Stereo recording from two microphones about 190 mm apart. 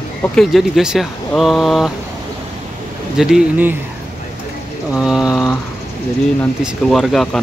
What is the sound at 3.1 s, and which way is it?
Speech, 5° right (ahead or behind).